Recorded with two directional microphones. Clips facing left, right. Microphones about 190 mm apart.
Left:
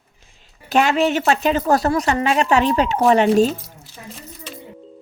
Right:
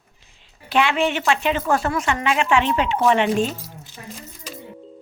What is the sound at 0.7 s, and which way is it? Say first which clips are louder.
Speech: left 3 dB; 40° left (ahead or behind).